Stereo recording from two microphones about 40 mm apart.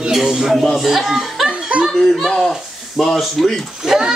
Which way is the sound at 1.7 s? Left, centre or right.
Right.